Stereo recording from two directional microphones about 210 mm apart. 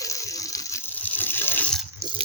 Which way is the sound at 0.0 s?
15° left (ahead or behind).